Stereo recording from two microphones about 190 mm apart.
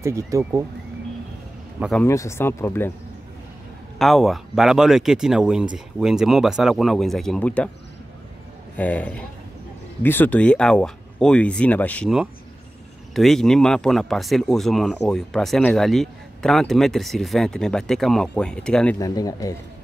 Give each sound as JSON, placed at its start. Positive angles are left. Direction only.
{"t": 0.0, "sound": "speech", "side_deg": -15}
{"t": 1.8, "sound": "speech", "side_deg": 0}
{"t": 2.0, "sound": "speech", "side_deg": 15}
{"t": 4.0, "sound": "speech", "side_deg": 0}
{"t": 8.7, "sound": "speech", "side_deg": 5}
{"t": 18.9, "sound": "speech", "side_deg": 20}